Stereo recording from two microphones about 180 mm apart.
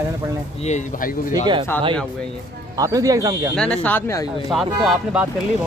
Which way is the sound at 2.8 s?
20° right (ahead or behind).